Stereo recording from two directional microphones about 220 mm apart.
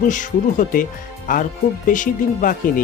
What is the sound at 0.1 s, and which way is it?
Speech, 35° left (ahead or behind).